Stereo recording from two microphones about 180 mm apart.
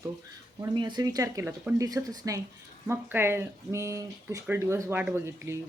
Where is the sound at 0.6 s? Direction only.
25° right (ahead or behind).